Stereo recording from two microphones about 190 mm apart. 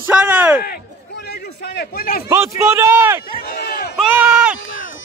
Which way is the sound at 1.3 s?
55° left (ahead or behind).